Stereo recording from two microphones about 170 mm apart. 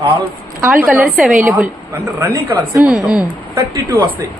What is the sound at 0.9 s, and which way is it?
Speech, 5° right (ahead or behind).